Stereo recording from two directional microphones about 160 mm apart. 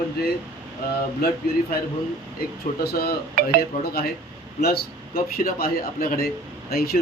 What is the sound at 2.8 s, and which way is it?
Speech, 80° left.